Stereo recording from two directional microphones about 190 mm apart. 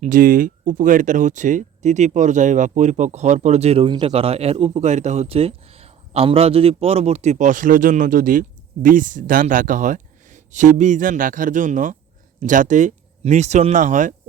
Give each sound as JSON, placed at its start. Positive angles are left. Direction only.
{"t": 0.0, "sound": "speech", "side_deg": -45}